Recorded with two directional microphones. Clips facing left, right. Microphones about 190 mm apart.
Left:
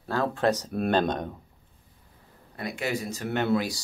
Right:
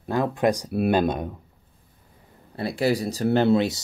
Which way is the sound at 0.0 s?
15° right (ahead or behind).